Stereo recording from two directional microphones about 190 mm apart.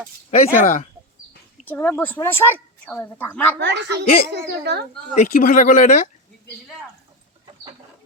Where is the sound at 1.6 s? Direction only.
10° left (ahead or behind).